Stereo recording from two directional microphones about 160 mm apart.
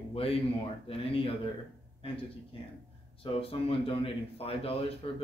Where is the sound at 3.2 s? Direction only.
35° left (ahead or behind).